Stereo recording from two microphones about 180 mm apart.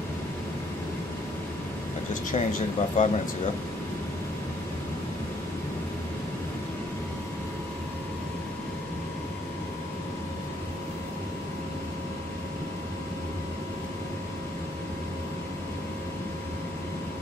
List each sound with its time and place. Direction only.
2.3 s speech: 40° left (ahead or behind)